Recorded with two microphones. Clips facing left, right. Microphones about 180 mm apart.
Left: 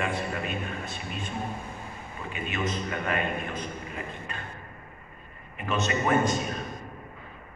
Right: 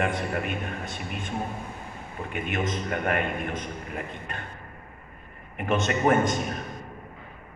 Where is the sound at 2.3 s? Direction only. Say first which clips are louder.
Right 2 dB; 55° right (ahead or behind).